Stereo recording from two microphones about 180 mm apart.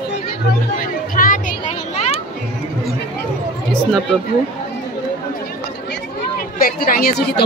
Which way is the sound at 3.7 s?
5° left (ahead or behind).